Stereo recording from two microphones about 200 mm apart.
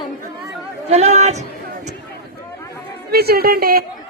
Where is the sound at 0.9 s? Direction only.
35° right (ahead or behind).